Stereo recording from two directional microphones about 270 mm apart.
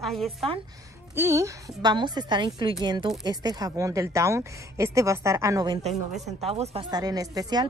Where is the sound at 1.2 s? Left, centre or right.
Centre.